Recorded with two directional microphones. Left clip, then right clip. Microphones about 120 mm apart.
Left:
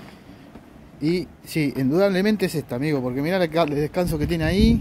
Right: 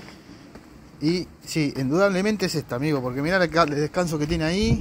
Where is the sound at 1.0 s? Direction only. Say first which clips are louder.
Left 1 dB; 25° left (ahead or behind).